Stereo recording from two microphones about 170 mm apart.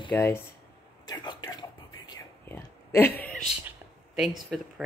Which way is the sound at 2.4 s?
15° left (ahead or behind).